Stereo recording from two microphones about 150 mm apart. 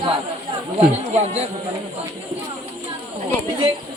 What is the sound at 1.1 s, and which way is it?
Speech, 45° right (ahead or behind).